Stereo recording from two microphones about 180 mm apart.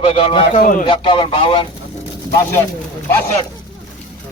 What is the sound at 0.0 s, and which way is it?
Speech, 30° left (ahead or behind).